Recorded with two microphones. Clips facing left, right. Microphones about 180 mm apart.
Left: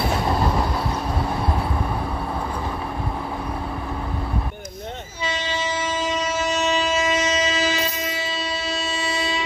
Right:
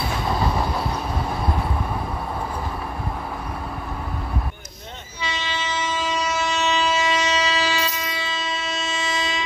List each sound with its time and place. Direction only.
5.2 s train: 45° left (ahead or behind)